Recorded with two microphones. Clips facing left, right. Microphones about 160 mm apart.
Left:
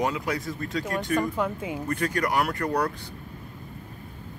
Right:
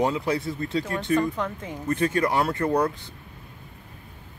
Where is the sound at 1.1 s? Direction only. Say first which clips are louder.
Right 3 dB; 10° left (ahead or behind).